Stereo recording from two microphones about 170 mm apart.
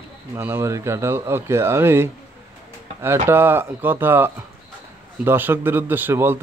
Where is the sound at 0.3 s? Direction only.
15° right (ahead or behind).